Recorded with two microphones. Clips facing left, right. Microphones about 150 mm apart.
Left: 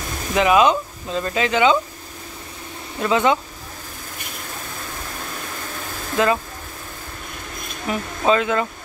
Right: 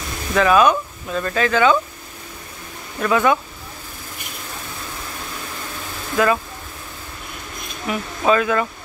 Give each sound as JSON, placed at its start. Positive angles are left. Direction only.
{"t": 0.3, "sound": "speech", "side_deg": 20}
{"t": 3.0, "sound": "speech", "side_deg": 25}
{"t": 6.1, "sound": "speech", "side_deg": 25}
{"t": 7.9, "sound": "speech", "side_deg": 35}
{"t": 8.3, "sound": "speech", "side_deg": 25}